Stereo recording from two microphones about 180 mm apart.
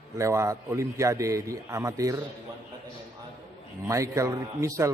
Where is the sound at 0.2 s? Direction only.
15° right (ahead or behind).